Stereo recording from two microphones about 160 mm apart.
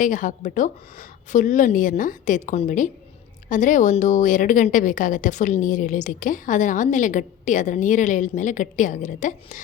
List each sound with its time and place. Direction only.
0.0 s a woman's voice: 55° left (ahead or behind)